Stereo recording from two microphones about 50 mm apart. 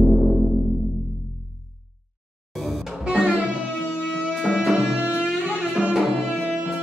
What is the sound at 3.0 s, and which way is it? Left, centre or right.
Music, right.